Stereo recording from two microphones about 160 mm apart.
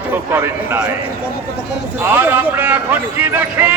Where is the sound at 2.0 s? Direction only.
10° right (ahead or behind).